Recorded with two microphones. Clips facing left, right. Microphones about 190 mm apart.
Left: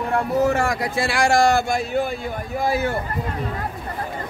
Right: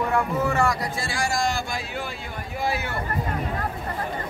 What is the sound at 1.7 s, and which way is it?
Speech, 50° left (ahead or behind).